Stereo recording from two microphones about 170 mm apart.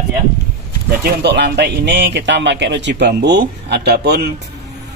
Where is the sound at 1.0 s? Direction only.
70° right (ahead or behind).